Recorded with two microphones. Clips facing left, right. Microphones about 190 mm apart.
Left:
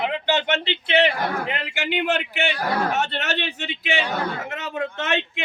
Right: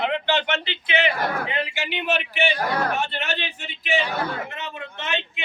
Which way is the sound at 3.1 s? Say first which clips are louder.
Left 3 dB; 80° left.